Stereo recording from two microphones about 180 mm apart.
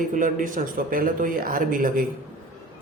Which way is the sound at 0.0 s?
45° right (ahead or behind).